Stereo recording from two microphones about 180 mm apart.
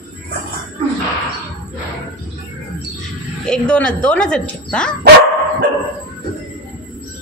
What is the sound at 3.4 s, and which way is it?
Speech, 5° left (ahead or behind).